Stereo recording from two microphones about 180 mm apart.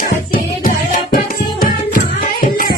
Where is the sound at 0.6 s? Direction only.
45° left (ahead or behind).